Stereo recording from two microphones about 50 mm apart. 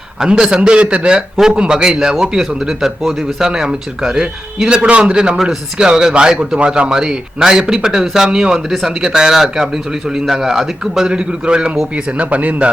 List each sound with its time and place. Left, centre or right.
0.2 s a man's voice: centre
3.4 s a man's voice: centre
11.1 s a man's voice: centre